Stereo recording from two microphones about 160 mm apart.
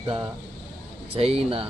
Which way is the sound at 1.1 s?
35° right (ahead or behind).